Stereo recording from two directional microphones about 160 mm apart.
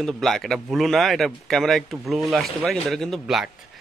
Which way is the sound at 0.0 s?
Centre (ahead or behind).